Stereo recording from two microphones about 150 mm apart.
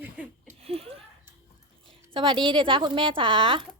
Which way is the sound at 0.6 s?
40° right (ahead or behind).